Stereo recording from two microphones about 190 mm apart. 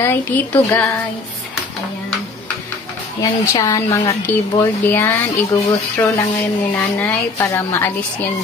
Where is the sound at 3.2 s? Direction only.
20° left (ahead or behind).